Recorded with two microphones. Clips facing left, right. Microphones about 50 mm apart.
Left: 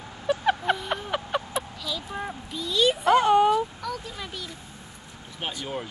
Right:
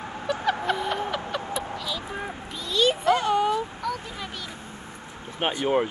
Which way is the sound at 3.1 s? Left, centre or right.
Left.